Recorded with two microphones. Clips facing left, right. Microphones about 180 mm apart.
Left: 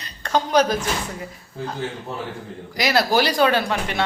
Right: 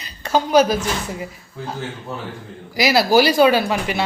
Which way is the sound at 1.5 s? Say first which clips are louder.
Left 1 dB; 30° left (ahead or behind).